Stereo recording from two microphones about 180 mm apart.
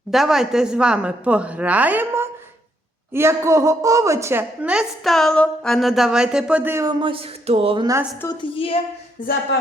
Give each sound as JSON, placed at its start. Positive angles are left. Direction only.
{"t": 0.1, "sound": "a woman's voice", "side_deg": 0}
{"t": 8.2, "sound": "a woman's voice", "side_deg": 25}
{"t": 9.2, "sound": "speech", "side_deg": 45}